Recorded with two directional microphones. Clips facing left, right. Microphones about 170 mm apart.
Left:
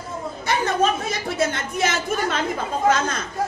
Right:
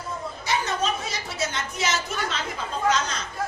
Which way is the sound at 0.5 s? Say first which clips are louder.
Left 5 dB; 55° left (ahead or behind).